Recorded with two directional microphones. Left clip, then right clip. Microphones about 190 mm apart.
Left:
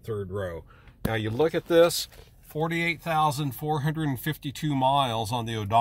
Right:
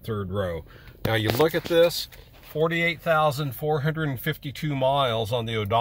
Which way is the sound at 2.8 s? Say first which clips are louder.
Right 1 dB; 20° left (ahead or behind).